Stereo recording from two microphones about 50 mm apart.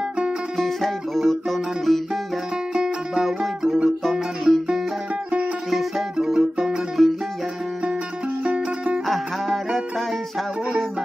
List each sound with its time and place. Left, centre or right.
0.6 s music: centre
2.7 s music: centre
5.7 s music: centre
6.1 s music: centre
6.4 s music: centre
8.5 s music: right
9.0 s music: centre